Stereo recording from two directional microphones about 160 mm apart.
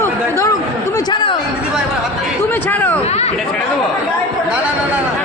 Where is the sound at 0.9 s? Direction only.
30° left (ahead or behind).